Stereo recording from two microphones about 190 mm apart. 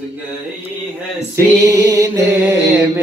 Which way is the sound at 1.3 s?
15° right (ahead or behind).